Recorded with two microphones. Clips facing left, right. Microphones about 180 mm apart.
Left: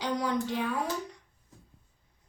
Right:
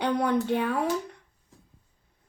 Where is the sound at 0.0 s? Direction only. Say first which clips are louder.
Right 5 dB; 60° right (ahead or behind).